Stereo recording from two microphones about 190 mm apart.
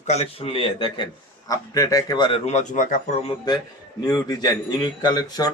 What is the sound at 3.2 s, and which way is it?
Speech, 25° left (ahead or behind).